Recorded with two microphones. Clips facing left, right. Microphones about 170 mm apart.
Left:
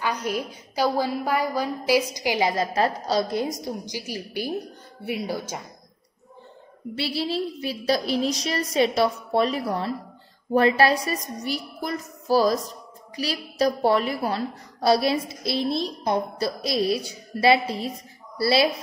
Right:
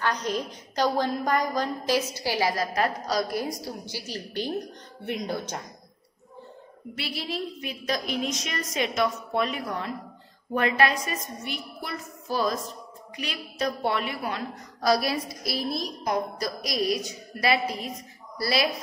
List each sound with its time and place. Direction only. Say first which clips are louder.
0.0 s a woman's voice: left 1 dB; 10° left (ahead or behind)
7.0 s a woman's voice: left 6 dB; 30° left (ahead or behind)